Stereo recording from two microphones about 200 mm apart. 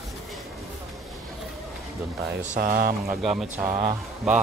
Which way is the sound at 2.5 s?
45° right (ahead or behind).